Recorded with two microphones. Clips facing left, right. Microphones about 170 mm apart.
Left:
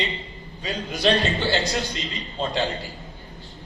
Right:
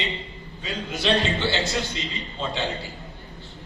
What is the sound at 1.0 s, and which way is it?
Speech, 40° left (ahead or behind).